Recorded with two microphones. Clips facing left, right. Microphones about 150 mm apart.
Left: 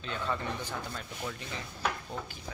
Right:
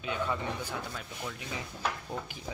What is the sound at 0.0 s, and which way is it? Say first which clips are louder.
Speech: right 2 dB; 10° right (ahead or behind).